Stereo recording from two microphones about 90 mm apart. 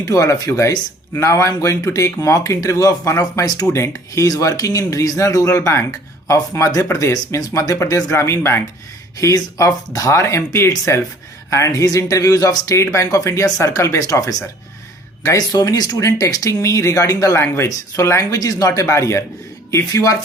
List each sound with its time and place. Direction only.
0.0 s speech: 40° left (ahead or behind)